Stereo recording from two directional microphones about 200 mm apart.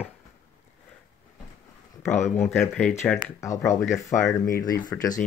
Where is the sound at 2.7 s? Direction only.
Centre (ahead or behind).